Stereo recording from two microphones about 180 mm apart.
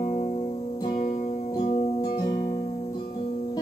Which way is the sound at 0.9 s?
50° left (ahead or behind).